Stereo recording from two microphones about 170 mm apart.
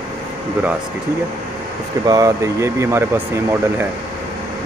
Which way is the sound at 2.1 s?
20° right (ahead or behind).